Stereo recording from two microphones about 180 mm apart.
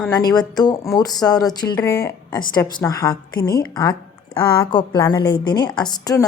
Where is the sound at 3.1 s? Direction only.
55° left (ahead or behind).